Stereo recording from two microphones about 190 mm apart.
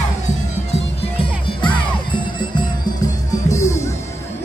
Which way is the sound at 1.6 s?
25° left (ahead or behind).